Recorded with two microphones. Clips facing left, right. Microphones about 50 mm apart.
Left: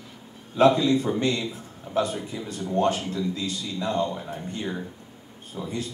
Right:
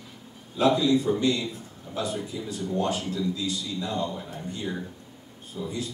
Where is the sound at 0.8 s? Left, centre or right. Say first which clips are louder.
Even; left.